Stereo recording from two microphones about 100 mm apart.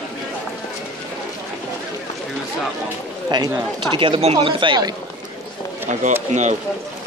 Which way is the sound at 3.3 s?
45° right (ahead or behind).